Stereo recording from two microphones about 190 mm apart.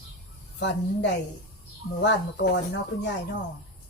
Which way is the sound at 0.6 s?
65° left (ahead or behind).